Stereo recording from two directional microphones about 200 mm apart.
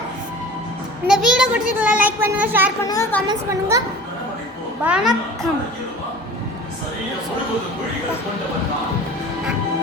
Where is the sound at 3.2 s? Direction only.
15° right (ahead or behind).